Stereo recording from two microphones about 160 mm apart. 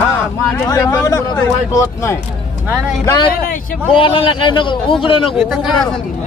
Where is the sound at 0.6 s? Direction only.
20° left (ahead or behind).